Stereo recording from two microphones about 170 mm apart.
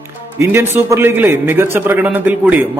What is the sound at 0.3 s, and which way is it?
A man's voice, 15° right (ahead or behind).